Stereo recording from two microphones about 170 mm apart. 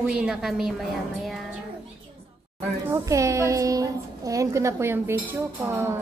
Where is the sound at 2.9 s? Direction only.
20° right (ahead or behind).